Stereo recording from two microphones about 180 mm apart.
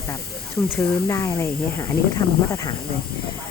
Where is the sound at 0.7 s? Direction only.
15° left (ahead or behind).